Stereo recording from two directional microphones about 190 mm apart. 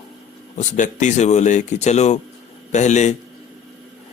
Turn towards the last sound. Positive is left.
turn(degrees=40)  # may be behind; listen again after turning